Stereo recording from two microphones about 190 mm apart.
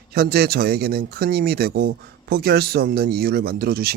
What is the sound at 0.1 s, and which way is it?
Speech, 55° right (ahead or behind).